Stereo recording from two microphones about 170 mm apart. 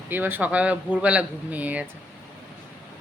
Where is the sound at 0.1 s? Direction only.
10° right (ahead or behind).